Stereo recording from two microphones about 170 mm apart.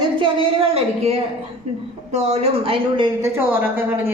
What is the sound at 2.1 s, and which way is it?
Speech, 40° right (ahead or behind).